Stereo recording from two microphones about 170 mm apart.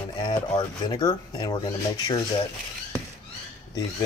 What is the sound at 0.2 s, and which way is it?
Speech, 25° left (ahead or behind).